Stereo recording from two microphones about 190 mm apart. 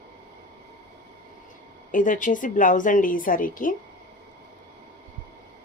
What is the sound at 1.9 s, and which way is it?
A woman's voice, 45° left (ahead or behind).